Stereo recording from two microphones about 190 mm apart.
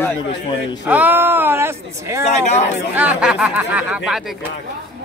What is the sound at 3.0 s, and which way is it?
Speech, 5° right (ahead or behind).